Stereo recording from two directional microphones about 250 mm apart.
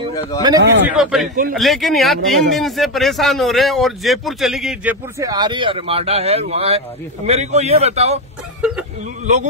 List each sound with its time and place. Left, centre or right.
0.4 s speech: centre
0.9 s a man's voice: centre
5.2 s speech: centre
9.2 s speech: right